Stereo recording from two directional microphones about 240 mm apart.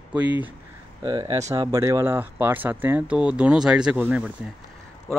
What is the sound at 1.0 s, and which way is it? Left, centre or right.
Speech, right.